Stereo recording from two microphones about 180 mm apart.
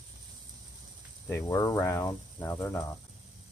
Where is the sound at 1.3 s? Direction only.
15° left (ahead or behind).